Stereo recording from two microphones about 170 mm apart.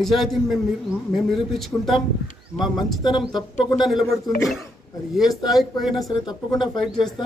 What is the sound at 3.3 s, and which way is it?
Speech, 25° left (ahead or behind).